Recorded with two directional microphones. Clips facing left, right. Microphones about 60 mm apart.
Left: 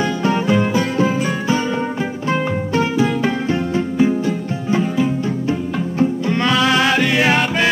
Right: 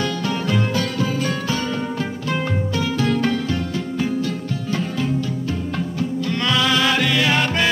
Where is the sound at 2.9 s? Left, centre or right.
Centre.